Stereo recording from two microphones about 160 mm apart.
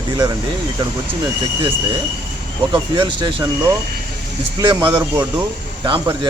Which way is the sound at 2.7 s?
30° right (ahead or behind).